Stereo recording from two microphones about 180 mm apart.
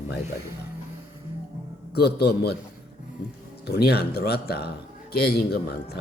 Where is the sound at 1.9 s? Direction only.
60° left (ahead or behind).